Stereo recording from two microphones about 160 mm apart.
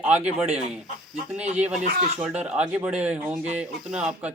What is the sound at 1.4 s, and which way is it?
Speech, 45° right (ahead or behind).